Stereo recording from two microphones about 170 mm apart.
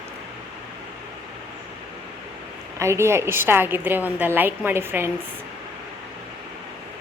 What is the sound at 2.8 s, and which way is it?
A woman's voice, 15° right (ahead or behind).